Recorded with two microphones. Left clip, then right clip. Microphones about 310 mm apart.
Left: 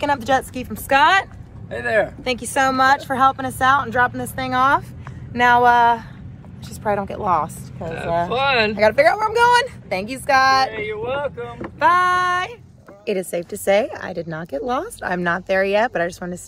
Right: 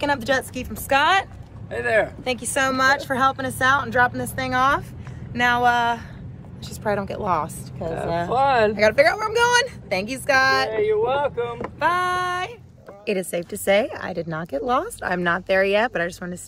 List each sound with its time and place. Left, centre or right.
0.0 s a woman's voice: centre
0.6 s female singing: centre
1.7 s speech: centre
2.2 s a woman's voice: left
5.3 s a sound: centre
6.8 s a woman's voice: centre
8.5 s speech: centre
8.7 s a woman's voice: centre
10.7 s speech: right
11.3 s speech: centre
11.8 s female singing: left
13.0 s a woman's voice: centre